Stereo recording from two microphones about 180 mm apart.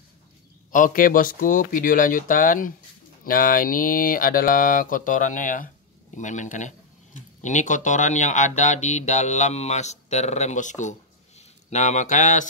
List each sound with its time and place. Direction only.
0.7 s speech: 50° left (ahead or behind)